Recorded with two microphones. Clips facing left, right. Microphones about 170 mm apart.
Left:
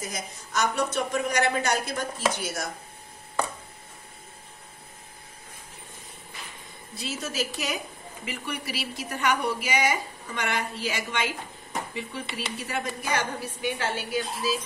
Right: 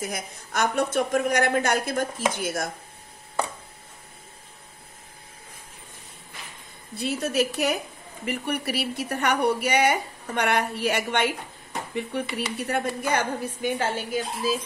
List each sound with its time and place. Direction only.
0.0 s a woman's voice: 55° right (ahead or behind)
7.0 s a woman's voice: 60° right (ahead or behind)
13.6 s a woman's voice: 45° right (ahead or behind)